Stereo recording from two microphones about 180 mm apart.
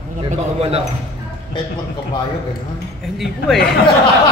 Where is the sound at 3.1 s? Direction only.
Centre (ahead or behind).